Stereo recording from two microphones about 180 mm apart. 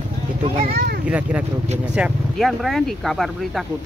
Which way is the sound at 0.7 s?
60° right (ahead or behind).